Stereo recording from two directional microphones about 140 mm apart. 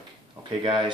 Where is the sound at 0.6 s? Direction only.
35° right (ahead or behind).